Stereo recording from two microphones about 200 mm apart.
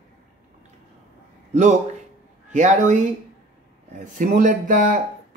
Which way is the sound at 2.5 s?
35° right (ahead or behind).